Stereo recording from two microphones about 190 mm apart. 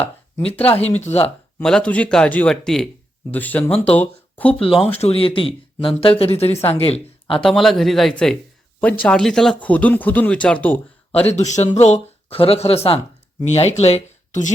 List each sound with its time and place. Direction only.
0.9 s speech: 35° left (ahead or behind)
1.5 s speech: 5° left (ahead or behind)
4.6 s speech: 30° left (ahead or behind)
7.4 s speech: centre (ahead or behind)
11.3 s speech: 35° left (ahead or behind)